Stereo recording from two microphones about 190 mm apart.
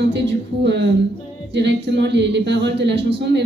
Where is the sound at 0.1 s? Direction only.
65° right (ahead or behind).